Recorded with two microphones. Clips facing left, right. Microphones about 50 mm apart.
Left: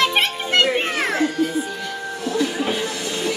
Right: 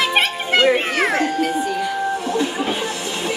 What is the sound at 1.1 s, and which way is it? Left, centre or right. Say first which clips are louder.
Music: right 1 dB; right.